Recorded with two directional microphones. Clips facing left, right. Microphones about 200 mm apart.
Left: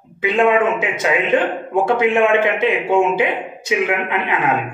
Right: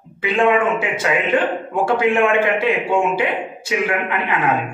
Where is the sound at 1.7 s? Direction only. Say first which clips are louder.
Left 2 dB; 20° left (ahead or behind).